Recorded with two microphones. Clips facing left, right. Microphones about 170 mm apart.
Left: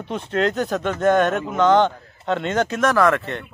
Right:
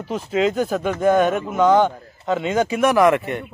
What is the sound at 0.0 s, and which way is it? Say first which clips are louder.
A man's voice: right 2 dB; 5° right (ahead or behind).